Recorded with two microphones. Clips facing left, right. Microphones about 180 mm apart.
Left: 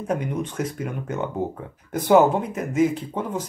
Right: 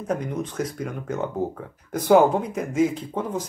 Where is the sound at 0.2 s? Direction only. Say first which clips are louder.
Left 1 dB; 5° left (ahead or behind).